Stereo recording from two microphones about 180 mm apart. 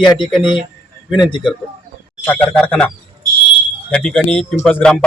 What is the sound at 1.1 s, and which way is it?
Speech, 25° left (ahead or behind).